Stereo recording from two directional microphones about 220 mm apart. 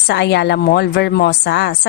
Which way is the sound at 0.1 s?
50° left (ahead or behind).